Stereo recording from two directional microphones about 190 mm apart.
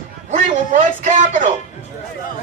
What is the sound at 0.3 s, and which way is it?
A man's voice, 40° right (ahead or behind).